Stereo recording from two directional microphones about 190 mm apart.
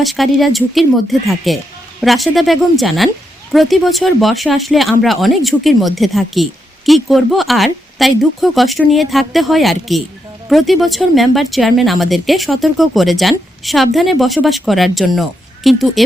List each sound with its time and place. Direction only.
0.0 s speech: centre (ahead or behind)